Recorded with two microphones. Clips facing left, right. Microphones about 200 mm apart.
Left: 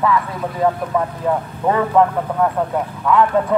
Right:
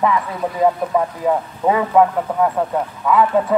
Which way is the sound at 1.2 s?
10° right (ahead or behind).